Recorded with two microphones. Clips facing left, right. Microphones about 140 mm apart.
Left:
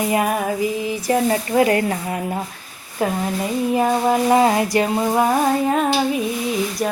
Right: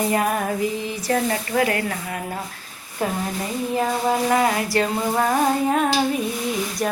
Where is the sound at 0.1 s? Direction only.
10° left (ahead or behind).